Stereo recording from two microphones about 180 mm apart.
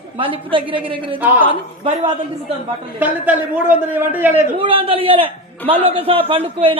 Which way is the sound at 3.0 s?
10° right (ahead or behind).